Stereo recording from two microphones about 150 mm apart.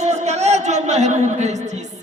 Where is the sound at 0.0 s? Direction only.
50° right (ahead or behind).